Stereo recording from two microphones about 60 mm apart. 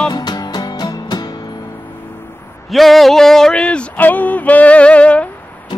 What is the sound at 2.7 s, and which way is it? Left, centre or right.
Speech, centre.